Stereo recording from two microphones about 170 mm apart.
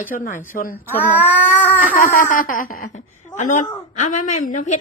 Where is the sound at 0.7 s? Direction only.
10° left (ahead or behind).